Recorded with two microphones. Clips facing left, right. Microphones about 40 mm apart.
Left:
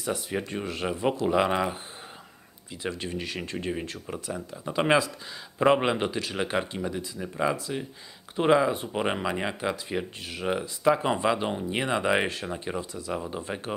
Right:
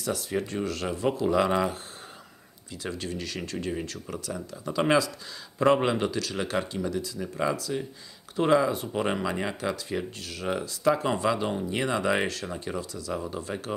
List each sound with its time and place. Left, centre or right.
0.0 s speech: centre
3.0 s speech: left